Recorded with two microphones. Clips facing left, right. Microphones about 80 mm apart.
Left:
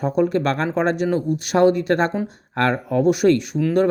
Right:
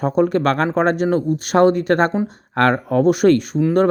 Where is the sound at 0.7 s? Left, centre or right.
Right.